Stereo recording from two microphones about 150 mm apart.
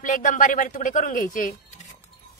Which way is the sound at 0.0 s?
60° left (ahead or behind).